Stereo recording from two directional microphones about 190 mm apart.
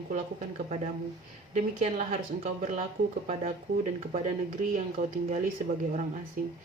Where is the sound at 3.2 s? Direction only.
40° right (ahead or behind).